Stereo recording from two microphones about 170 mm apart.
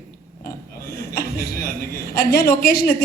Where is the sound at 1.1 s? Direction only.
60° left (ahead or behind).